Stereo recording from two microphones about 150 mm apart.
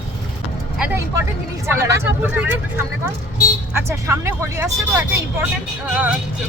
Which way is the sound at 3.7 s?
20° right (ahead or behind).